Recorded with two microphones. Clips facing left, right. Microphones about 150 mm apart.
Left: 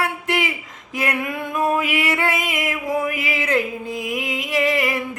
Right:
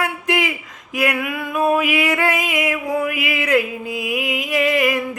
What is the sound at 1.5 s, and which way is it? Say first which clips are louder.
Music: right 3 dB; 10° right (ahead or behind).